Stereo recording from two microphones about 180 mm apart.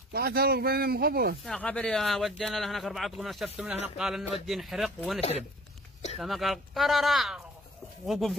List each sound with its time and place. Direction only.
0.1 s speech: 60° right (ahead or behind)
1.4 s speech: 5° left (ahead or behind)